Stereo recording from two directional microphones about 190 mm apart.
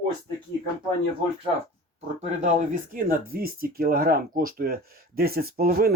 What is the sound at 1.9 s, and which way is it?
Speech, 35° right (ahead or behind).